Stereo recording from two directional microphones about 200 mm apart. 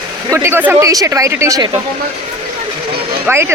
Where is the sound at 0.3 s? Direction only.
10° right (ahead or behind).